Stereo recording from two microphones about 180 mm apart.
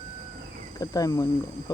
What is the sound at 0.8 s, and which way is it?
Speech, 20° left (ahead or behind).